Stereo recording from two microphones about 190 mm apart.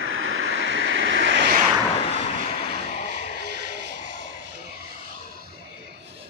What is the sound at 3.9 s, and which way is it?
Vehicle, 70° right (ahead or behind).